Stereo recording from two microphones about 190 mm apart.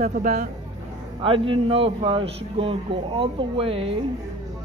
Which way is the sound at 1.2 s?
30° right (ahead or behind).